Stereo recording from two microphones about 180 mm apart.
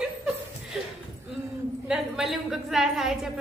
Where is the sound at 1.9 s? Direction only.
Centre (ahead or behind).